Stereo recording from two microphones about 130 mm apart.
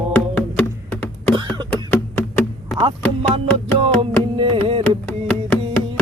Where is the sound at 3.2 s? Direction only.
45° right (ahead or behind).